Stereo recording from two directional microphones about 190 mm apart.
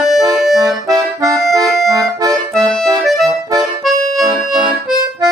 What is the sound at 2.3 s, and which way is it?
Accordion, centre (ahead or behind).